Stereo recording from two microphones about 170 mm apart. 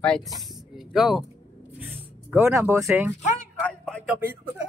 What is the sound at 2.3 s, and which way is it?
Speech, 15° right (ahead or behind).